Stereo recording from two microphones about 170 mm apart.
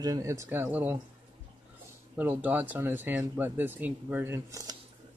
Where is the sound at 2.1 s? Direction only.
10° right (ahead or behind).